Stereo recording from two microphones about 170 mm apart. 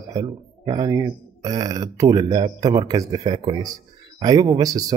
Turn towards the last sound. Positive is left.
turn(degrees=-20)  # may be behind; listen again after turning